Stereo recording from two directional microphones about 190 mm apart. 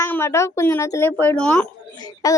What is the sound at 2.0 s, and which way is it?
Speech, 20° left (ahead or behind).